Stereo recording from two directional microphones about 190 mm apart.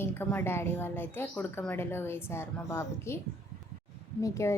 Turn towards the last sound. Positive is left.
turn(degrees=15)  # may be behind; listen again after turning